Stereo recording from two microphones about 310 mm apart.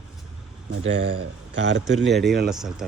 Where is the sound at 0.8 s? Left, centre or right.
Right.